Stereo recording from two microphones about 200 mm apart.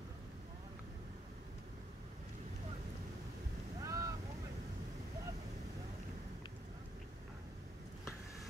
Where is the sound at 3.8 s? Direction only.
15° right (ahead or behind).